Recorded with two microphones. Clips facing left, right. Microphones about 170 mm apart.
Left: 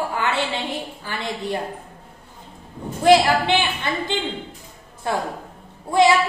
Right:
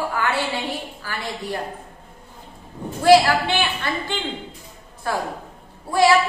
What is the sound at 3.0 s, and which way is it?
A woman's voice, 20° left (ahead or behind).